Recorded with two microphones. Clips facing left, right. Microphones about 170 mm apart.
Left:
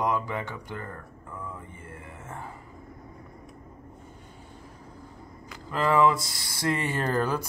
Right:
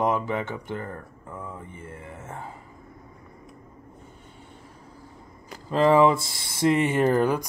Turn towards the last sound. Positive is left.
turn(degrees=-15)  # may be behind; listen again after turning